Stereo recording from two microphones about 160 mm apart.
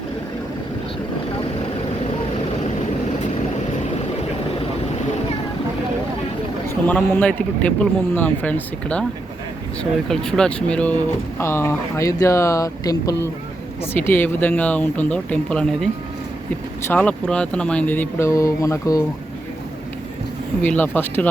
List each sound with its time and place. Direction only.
6.8 s a man's voice: 10° left (ahead or behind)
10.1 s a man's voice: 5° left (ahead or behind)
16.9 s a man's voice: 10° left (ahead or behind)
20.6 s a man's voice: 10° left (ahead or behind)